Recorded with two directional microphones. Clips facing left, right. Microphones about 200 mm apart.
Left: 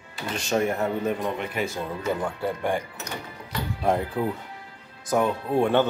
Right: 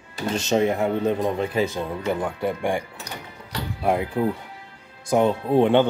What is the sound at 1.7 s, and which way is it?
Speech, 15° right (ahead or behind).